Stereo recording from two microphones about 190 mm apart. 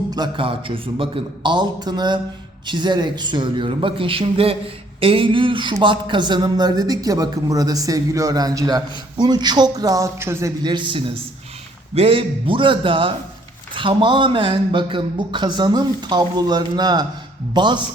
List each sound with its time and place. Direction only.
0.1 s a man's voice: 25° right (ahead or behind)